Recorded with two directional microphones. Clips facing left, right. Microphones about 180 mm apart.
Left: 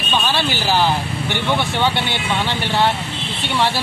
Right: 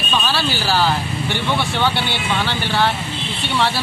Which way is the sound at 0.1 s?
20° left (ahead or behind).